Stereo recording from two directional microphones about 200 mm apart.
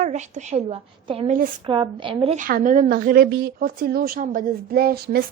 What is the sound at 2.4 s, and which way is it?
A woman's voice, 45° right (ahead or behind).